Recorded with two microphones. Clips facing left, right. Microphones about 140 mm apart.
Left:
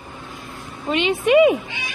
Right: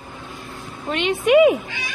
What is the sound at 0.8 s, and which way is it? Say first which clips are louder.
Speech: even; centre (ahead or behind).